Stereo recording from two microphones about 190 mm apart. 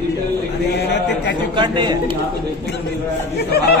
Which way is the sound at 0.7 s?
60° left (ahead or behind).